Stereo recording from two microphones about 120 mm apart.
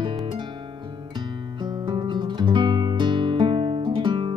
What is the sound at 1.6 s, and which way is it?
Music, 40° right (ahead or behind).